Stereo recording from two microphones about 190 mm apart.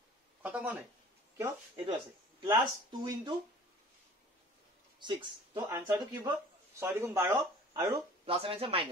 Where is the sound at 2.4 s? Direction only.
25° right (ahead or behind).